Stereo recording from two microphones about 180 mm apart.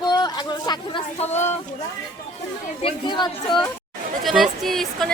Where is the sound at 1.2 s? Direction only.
40° left (ahead or behind).